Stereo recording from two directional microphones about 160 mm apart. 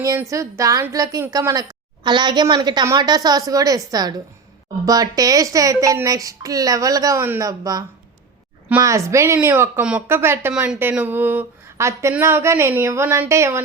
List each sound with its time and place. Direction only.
0.0 s a woman's voice: 20° right (ahead or behind)